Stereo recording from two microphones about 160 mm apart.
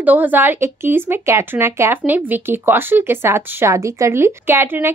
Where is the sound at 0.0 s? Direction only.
10° right (ahead or behind).